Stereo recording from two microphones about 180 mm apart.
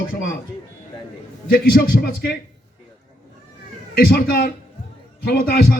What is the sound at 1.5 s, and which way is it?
Speech, 55° left (ahead or behind).